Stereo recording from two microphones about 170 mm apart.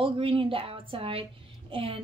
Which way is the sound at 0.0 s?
30° right (ahead or behind).